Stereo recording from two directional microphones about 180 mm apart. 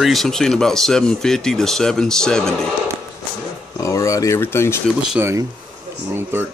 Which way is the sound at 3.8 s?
15° left (ahead or behind).